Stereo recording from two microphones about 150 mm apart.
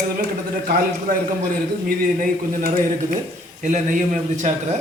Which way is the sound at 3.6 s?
55° right (ahead or behind).